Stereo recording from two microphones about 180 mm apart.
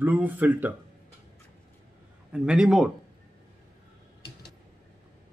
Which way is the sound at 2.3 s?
5° right (ahead or behind).